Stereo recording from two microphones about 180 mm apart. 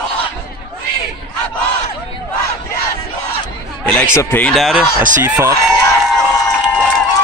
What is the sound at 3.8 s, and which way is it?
Speech, 5° left (ahead or behind).